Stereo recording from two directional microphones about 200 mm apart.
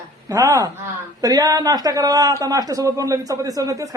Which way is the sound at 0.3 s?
15° right (ahead or behind).